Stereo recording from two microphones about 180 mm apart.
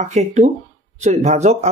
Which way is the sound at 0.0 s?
40° right (ahead or behind).